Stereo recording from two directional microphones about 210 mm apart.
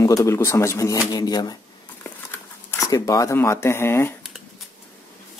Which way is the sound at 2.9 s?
15° left (ahead or behind).